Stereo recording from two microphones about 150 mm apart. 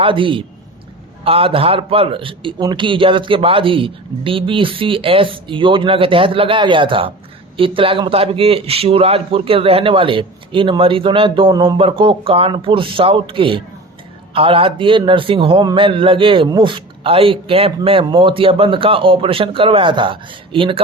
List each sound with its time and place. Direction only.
0.0 s a man's voice: 35° right (ahead or behind)